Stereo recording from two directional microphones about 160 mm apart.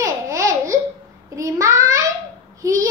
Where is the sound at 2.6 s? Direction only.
20° right (ahead or behind).